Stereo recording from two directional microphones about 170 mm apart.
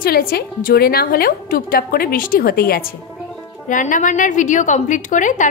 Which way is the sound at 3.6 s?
50° left (ahead or behind).